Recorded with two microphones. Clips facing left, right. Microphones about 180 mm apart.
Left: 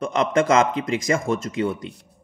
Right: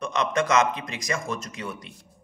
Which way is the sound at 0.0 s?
25° left (ahead or behind).